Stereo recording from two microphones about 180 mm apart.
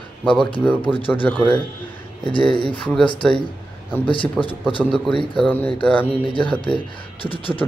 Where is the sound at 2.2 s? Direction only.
25° left (ahead or behind).